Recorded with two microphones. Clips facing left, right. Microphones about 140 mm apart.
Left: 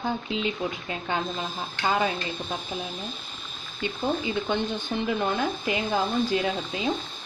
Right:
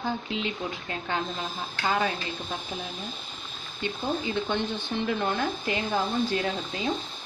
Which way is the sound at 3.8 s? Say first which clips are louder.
Left 2 dB; 20° left (ahead or behind).